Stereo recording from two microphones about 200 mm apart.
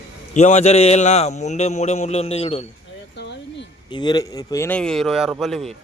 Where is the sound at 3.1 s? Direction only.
60° left (ahead or behind).